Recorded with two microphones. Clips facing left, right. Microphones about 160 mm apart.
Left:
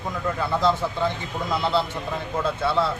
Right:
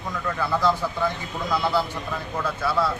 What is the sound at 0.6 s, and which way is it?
A man's voice, 25° left (ahead or behind).